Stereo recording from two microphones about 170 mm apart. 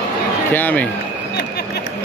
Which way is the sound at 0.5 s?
10° left (ahead or behind).